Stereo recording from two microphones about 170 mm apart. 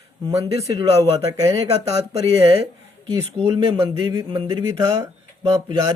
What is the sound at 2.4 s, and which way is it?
Speech, 35° right (ahead or behind).